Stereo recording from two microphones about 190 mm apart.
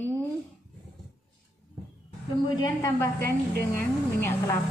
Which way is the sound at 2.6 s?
20° left (ahead or behind).